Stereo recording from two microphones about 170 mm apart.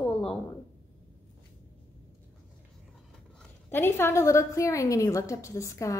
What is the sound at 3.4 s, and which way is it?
A woman's voice, 10° left (ahead or behind).